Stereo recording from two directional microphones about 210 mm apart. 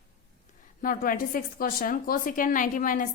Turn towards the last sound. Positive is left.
turn(degrees=40)  # may be behind; listen again after turning